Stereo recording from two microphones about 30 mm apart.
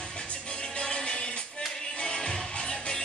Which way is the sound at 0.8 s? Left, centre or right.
Left.